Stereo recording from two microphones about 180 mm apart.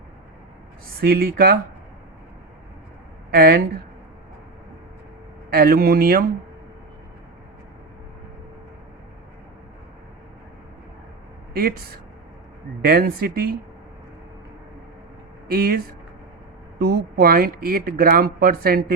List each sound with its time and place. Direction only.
1.0 s speech: 55° right (ahead or behind)
3.3 s speech: 55° right (ahead or behind)
5.5 s speech: 55° right (ahead or behind)
11.5 s speech: 55° right (ahead or behind)
15.4 s speech: 55° right (ahead or behind)